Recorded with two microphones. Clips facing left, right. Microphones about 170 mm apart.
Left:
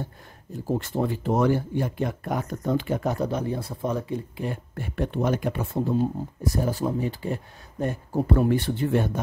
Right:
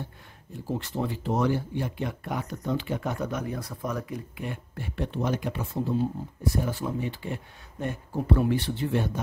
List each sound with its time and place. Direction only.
0.7 s speech: 50° left (ahead or behind); by 4.6 s 30° left (ahead or behind)
4.7 s speech: 50° left (ahead or behind)
6.4 s speech: 40° left (ahead or behind)